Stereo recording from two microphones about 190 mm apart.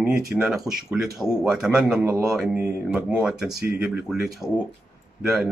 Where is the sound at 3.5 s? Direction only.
55° right (ahead or behind).